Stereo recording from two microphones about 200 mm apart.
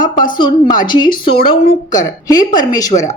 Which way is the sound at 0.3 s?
20° left (ahead or behind).